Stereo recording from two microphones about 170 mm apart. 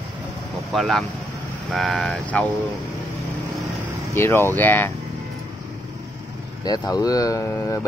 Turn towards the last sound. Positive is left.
turn(degrees=15)  # may be behind; listen again after turning